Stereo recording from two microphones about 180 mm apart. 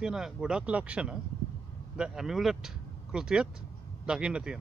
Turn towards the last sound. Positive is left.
turn(degrees=-5)  # may be behind; listen again after turning